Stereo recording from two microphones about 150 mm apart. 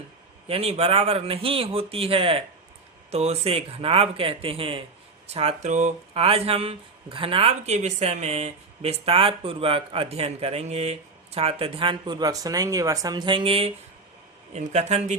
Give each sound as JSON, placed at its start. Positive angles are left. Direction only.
{"t": 0.4, "sound": "speech", "side_deg": -40}
{"t": 14.5, "sound": "speech", "side_deg": -50}